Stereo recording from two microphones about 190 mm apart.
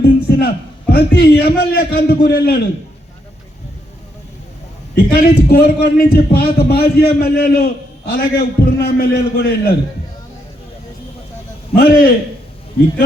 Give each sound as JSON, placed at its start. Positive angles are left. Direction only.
{"t": 0.3, "sound": "a man's voice", "side_deg": 55}
{"t": 4.9, "sound": "a man's voice", "side_deg": 55}
{"t": 11.7, "sound": "a man's voice", "side_deg": 50}